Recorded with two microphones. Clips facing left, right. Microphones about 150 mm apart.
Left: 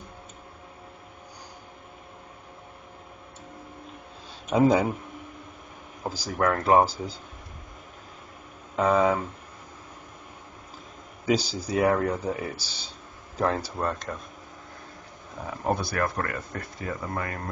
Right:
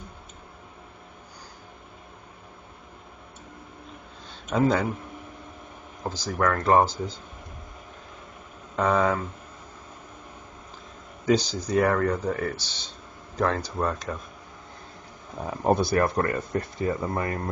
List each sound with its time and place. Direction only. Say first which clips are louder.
4.5 s speech: left 2 dB; 15° left (ahead or behind)
6.0 s speech: even; 10° left (ahead or behind)
8.7 s speech: left 1 dB; 5° left (ahead or behind)
11.2 s speech: right 2 dB; 5° left (ahead or behind)
15.6 s speech: right 5 dB; 25° right (ahead or behind)